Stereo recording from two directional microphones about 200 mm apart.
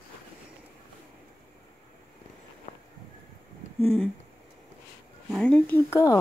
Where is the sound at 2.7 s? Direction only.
35° left (ahead or behind).